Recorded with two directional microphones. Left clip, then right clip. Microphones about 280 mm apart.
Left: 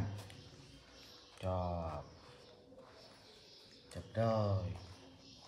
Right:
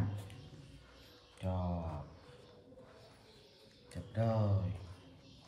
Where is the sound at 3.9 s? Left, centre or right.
Left.